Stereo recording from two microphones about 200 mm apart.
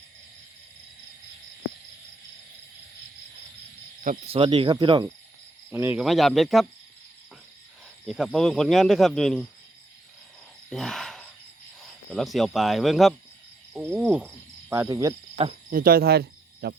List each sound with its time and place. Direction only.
4.3 s speech: 25° right (ahead or behind)
5.7 s speech: 10° right (ahead or behind)
8.0 s speech: centre (ahead or behind)
10.7 s cricket: centre (ahead or behind)
12.1 s speech: centre (ahead or behind)
14.7 s cricket: 15° right (ahead or behind)
15.7 s speech: 45° right (ahead or behind)